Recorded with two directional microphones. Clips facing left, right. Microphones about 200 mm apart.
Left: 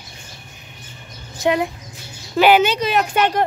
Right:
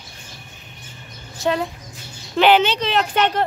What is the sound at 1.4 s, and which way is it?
Speech, 15° left (ahead or behind).